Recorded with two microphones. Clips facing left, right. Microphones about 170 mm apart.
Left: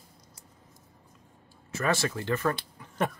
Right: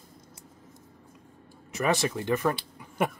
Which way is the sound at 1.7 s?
15° right (ahead or behind).